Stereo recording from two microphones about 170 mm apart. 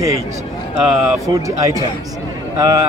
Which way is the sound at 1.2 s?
20° right (ahead or behind).